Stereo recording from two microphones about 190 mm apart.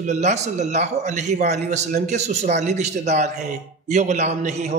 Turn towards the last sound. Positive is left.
turn(degrees=-35)  # may be behind; listen again after turning